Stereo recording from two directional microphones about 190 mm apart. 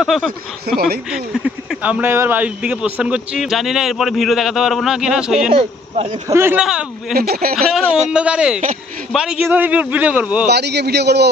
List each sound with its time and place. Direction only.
0.0 s speech: centre (ahead or behind)
0.7 s a man's voice: 55° right (ahead or behind)
1.1 s speech: 5° right (ahead or behind)
5.5 s speech: 30° right (ahead or behind)
6.2 s a man's voice: 15° right (ahead or behind)
7.2 s speech: 50° right (ahead or behind)
7.5 s a man's voice: centre (ahead or behind)
10.5 s a man's voice: 60° right (ahead or behind)